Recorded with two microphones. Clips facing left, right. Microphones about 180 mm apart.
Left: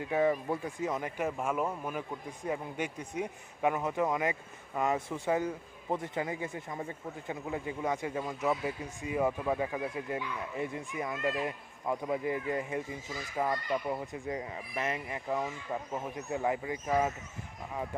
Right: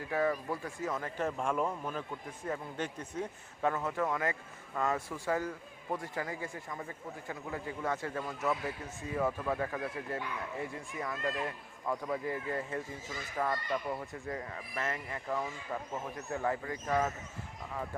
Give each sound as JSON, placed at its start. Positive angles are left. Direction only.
{"t": 0.0, "sound": "speech", "side_deg": 20}